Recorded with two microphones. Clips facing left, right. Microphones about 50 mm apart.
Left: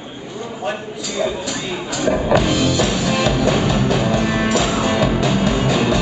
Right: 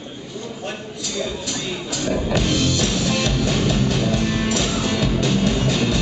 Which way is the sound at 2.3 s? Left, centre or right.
Centre.